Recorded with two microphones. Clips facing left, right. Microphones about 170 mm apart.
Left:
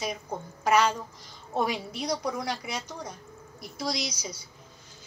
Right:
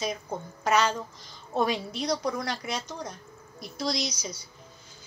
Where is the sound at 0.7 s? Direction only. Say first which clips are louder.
Left 1 dB; 10° left (ahead or behind).